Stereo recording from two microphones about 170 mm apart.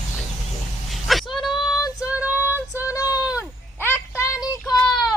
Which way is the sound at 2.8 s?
20° left (ahead or behind).